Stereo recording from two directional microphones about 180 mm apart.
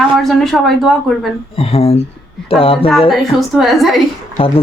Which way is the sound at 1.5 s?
35° left (ahead or behind).